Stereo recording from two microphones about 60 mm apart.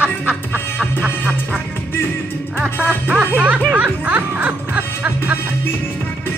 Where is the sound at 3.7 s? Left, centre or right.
Right.